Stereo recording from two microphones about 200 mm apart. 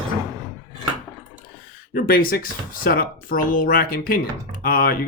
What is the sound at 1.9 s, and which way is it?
Speech, 45° left (ahead or behind).